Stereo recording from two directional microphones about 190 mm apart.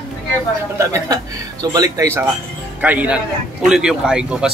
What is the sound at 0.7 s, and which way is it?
A man's voice, 15° right (ahead or behind).